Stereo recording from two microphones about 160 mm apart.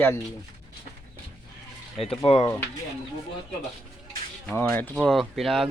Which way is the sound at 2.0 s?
35° left (ahead or behind).